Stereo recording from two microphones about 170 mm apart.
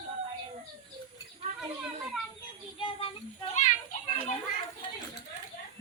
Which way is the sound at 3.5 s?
45° left (ahead or behind).